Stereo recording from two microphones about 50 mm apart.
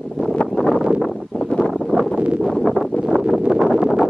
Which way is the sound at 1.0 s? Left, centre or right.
Centre.